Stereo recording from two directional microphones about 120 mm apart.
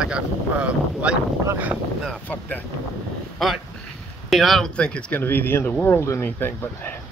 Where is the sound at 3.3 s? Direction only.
Centre (ahead or behind); by 7.0 s 15° left (ahead or behind).